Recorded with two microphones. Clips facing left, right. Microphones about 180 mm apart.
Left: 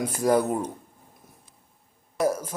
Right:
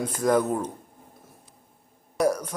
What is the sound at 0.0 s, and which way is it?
Speech, 10° left (ahead or behind).